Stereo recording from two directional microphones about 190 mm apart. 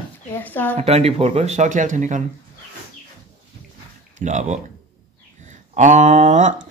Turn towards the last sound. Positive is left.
turn(degrees=-40)  # may be behind; listen again after turning